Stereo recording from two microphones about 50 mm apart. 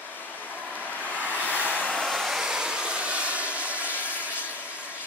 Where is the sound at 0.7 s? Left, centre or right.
Right.